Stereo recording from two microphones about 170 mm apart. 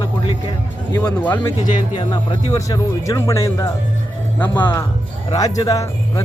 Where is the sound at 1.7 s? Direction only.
25° left (ahead or behind).